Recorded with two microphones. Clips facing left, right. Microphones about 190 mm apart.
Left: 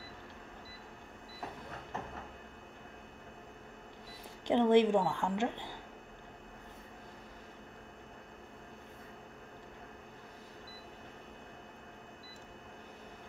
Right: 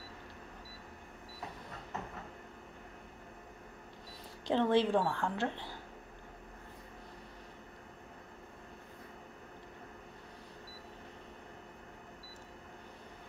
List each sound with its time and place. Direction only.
4.5 s a woman's voice: 15° left (ahead or behind)